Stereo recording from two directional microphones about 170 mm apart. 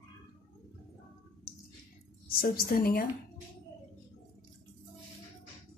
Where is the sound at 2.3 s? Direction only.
60° left (ahead or behind).